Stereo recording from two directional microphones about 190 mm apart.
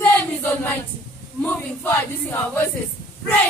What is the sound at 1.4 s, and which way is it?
Speech, 10° left (ahead or behind).